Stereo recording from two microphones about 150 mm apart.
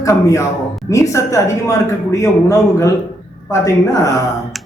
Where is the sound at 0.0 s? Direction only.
20° left (ahead or behind).